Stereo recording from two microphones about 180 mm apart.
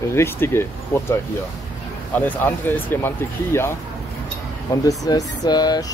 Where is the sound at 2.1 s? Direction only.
10° left (ahead or behind).